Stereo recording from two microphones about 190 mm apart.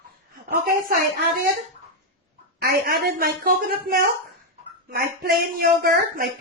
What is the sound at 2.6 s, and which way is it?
Speech, 50° right (ahead or behind).